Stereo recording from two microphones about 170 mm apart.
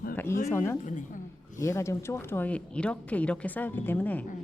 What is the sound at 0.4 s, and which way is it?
Speech, 15° left (ahead or behind).